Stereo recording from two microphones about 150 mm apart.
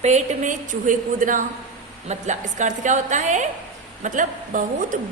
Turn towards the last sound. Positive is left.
turn(degrees=-60)  # may be behind; listen again after turning